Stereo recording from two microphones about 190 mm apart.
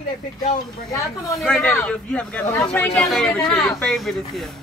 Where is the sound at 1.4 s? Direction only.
Centre (ahead or behind).